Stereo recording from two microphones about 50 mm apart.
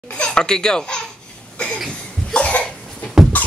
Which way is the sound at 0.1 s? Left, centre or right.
Centre.